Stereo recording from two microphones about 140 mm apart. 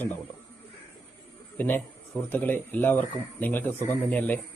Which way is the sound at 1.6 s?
15° left (ahead or behind).